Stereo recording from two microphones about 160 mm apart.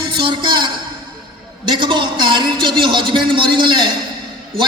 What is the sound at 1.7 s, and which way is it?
A man's voice, 30° right (ahead or behind).